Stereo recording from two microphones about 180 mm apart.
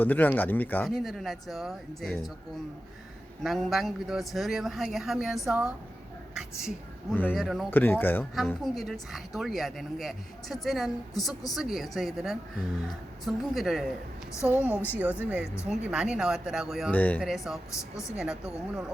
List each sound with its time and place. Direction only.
0.0 s speech: 10° left (ahead or behind)
0.9 s speech: centre (ahead or behind)
3.4 s a woman's voice: centre (ahead or behind)
7.7 s speech: 10° left (ahead or behind)
8.4 s speech: centre (ahead or behind)
14.7 s speech: 10° left (ahead or behind)
15.2 s speech: 5° right (ahead or behind)
16.9 s speech: 10° left (ahead or behind)
17.2 s speech: centre (ahead or behind)